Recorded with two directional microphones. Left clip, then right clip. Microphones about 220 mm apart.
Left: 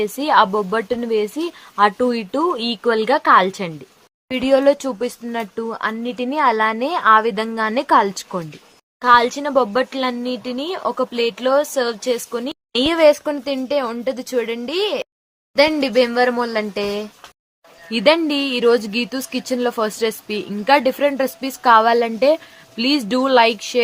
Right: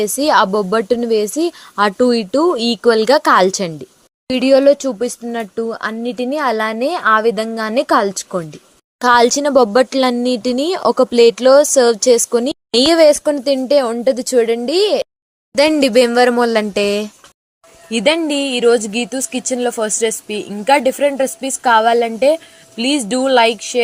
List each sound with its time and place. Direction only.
0.0 s speech: 25° right (ahead or behind)
9.0 s speech: 35° right (ahead or behind)
17.9 s speech: centre (ahead or behind)